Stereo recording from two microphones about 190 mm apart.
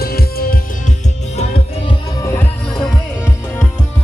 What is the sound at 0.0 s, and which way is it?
Music, 55° left (ahead or behind).